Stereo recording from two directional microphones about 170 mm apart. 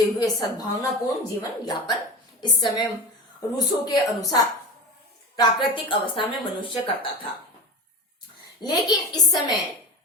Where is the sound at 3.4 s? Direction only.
25° left (ahead or behind).